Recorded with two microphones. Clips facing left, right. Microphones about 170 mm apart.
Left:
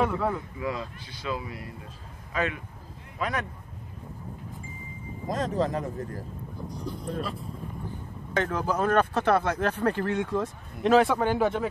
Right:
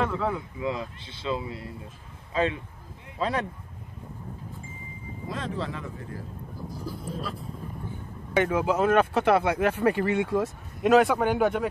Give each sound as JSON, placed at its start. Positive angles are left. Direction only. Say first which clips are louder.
{"t": 0.0, "sound": "speech", "louder": "left 1 dB", "side_deg": 10}
{"t": 0.6, "sound": "speech", "louder": "right 2 dB", "side_deg": -20}
{"t": 5.3, "sound": "speech", "louder": "left 6 dB", "side_deg": 40}
{"t": 6.8, "sound": "speech", "louder": "left 3 dB", "side_deg": -5}